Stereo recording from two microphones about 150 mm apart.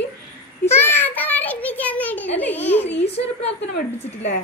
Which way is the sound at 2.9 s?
40° left (ahead or behind).